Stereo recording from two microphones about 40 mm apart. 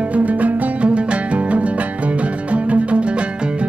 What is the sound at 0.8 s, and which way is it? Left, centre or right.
Music, right.